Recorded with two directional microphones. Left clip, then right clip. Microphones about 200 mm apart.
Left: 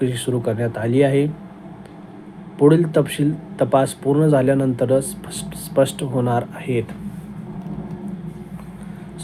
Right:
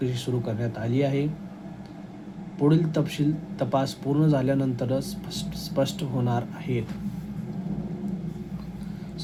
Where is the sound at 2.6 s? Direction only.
15° left (ahead or behind).